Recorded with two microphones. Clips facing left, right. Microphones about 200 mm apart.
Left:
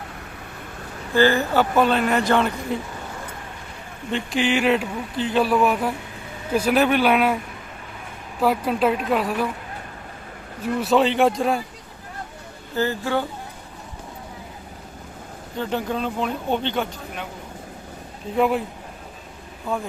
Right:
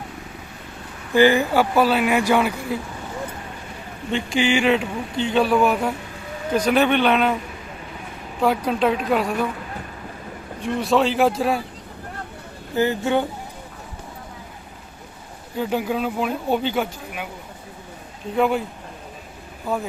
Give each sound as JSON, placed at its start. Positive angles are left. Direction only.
{"t": 1.1, "sound": "speech", "side_deg": -15}
{"t": 4.1, "sound": "speech", "side_deg": 0}
{"t": 8.4, "sound": "speech", "side_deg": 5}
{"t": 10.6, "sound": "speech", "side_deg": 5}
{"t": 12.7, "sound": "speech", "side_deg": -20}
{"t": 15.5, "sound": "speech", "side_deg": -10}
{"t": 18.3, "sound": "speech", "side_deg": 0}